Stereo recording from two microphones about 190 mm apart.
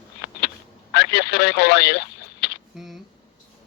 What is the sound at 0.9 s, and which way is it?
Speech, 60° left (ahead or behind).